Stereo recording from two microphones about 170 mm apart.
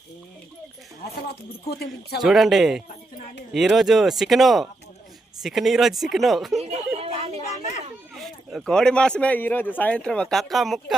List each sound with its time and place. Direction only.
1.7 s speech: 70° left (ahead or behind)
2.2 s speech: centre (ahead or behind)
6.6 s a sound: 35° right (ahead or behind)
8.1 s speech: centre (ahead or behind)